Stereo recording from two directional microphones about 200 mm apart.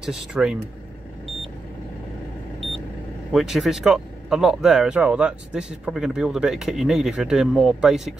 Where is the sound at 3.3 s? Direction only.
Centre (ahead or behind).